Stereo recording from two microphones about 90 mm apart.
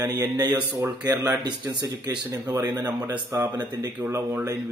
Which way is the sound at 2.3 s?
25° right (ahead or behind).